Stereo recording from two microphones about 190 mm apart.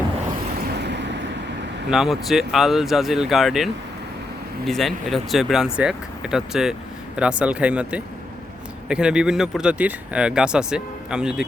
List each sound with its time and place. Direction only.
0.7 s vehicle: 65° right (ahead or behind)
1.9 s speech: centre (ahead or behind)